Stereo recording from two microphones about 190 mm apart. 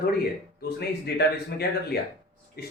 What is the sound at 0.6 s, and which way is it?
Speech, 55° left (ahead or behind).